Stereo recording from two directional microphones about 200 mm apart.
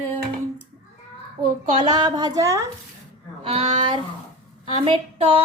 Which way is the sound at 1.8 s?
20° right (ahead or behind).